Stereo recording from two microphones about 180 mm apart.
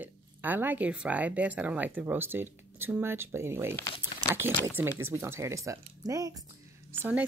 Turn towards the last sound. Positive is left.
turn(degrees=-10)  # may be behind; listen again after turning